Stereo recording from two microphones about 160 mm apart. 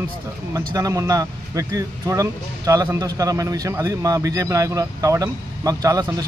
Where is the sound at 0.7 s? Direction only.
20° right (ahead or behind).